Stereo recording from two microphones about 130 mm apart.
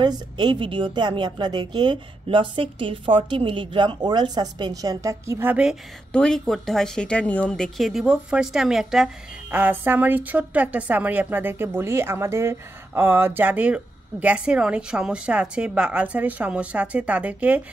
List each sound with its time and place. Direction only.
0.0 s a woman's voice: 35° right (ahead or behind); by 5.8 s 10° right (ahead or behind)
6.1 s speech: 5° left (ahead or behind)